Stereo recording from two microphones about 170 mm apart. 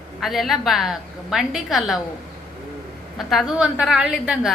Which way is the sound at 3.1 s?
Centre (ahead or behind).